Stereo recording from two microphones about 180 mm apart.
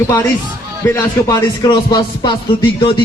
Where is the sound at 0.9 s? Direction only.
20° left (ahead or behind).